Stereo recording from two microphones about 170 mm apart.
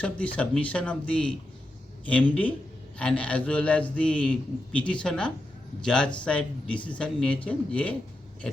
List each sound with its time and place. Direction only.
0.0 s a man's voice: 5° left (ahead or behind)
3.0 s a man's voice: 5° left (ahead or behind)